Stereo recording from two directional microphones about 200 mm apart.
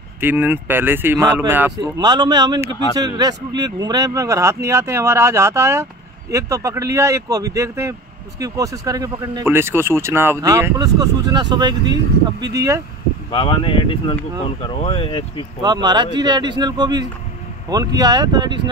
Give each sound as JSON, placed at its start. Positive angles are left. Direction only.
{"t": 0.2, "sound": "speech", "side_deg": -10}
{"t": 1.8, "sound": "speech", "side_deg": -20}
{"t": 13.3, "sound": "speech", "side_deg": 25}
{"t": 15.6, "sound": "speech", "side_deg": -20}